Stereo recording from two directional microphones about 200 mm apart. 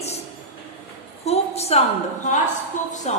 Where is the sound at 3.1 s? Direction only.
35° left (ahead or behind).